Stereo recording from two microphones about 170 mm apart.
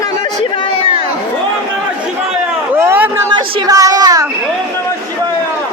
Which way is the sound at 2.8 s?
15° right (ahead or behind).